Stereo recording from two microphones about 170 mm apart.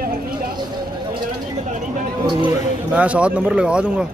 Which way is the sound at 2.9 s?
5° right (ahead or behind).